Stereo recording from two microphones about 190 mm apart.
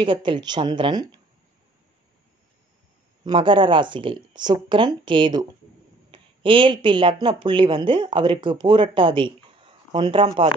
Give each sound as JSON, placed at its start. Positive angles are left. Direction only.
{"t": 0.0, "sound": "speech", "side_deg": -25}
{"t": 3.3, "sound": "speech", "side_deg": -25}